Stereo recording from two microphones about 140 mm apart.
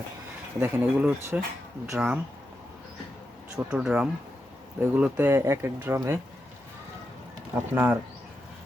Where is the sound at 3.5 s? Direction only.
5° right (ahead or behind).